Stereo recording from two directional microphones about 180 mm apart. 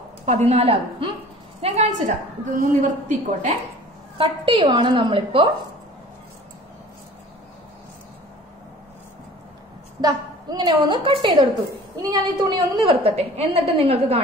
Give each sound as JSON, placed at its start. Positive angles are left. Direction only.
{"t": 0.2, "sound": "a woman's voice", "side_deg": -40}
{"t": 4.2, "sound": "a woman's voice", "side_deg": -30}
{"t": 10.0, "sound": "a woman's voice", "side_deg": -20}